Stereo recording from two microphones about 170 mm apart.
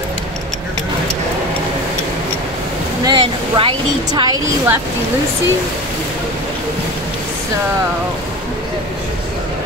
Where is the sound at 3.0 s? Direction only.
30° right (ahead or behind).